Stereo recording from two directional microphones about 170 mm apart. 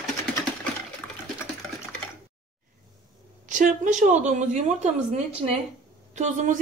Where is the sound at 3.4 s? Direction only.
45° right (ahead or behind).